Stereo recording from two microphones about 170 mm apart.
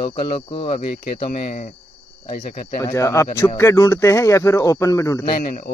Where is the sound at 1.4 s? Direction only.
50° left (ahead or behind).